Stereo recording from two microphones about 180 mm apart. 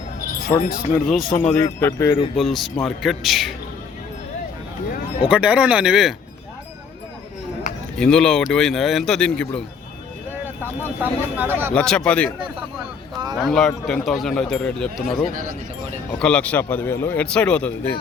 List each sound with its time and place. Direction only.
0.6 s speech: 55° left (ahead or behind)
0.9 s speech: centre (ahead or behind)
1.6 s a man's voice: 15° left (ahead or behind)
2.3 s speech: centre (ahead or behind)
5.3 s speech: 5° right (ahead or behind)
7.9 s speech: 5° left (ahead or behind)
10.4 s speech: 10° right (ahead or behind)
11.7 s speech: 5° left (ahead or behind)
13.4 s a man's voice: 5° left (ahead or behind)